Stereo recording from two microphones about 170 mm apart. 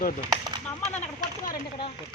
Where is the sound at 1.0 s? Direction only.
55° left (ahead or behind).